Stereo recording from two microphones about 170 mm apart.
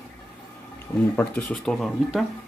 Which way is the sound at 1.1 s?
5° left (ahead or behind).